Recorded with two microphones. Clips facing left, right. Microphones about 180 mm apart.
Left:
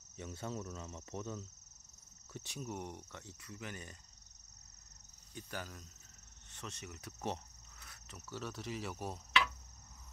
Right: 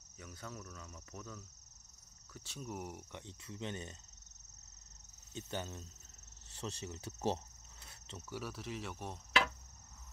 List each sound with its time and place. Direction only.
0.2 s speech: 25° left (ahead or behind)
2.3 s cricket: 15° left (ahead or behind)
2.6 s speech: 5° right (ahead or behind)
3.1 s speech: 20° right (ahead or behind)
5.3 s speech: 25° right (ahead or behind)
6.5 s cricket: 30° right (ahead or behind)
8.3 s speech: 5° right (ahead or behind)